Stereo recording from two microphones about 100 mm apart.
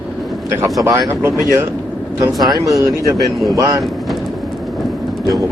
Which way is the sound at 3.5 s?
35° right (ahead or behind).